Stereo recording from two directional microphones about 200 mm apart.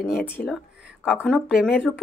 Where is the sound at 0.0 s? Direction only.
5° left (ahead or behind).